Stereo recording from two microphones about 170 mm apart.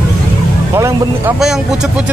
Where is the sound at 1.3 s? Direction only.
Centre (ahead or behind).